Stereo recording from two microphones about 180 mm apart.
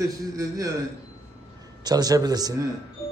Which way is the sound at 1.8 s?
20° right (ahead or behind).